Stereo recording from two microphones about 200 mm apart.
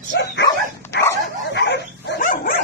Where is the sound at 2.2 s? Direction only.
40° left (ahead or behind).